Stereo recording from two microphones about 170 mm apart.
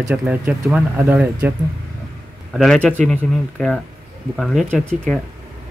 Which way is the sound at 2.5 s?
Centre (ahead or behind).